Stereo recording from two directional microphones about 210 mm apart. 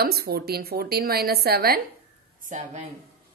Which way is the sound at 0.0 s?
50° right (ahead or behind).